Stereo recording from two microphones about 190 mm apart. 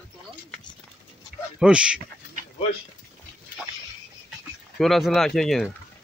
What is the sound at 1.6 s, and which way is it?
Speech, 5° right (ahead or behind).